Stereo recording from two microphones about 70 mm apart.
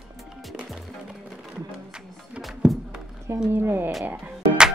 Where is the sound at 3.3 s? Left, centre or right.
Right.